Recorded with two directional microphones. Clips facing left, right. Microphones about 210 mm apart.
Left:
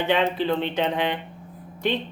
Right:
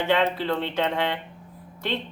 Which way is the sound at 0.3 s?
20° left (ahead or behind).